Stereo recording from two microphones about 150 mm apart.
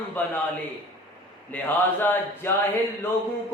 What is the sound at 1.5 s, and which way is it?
A man's voice, 15° left (ahead or behind).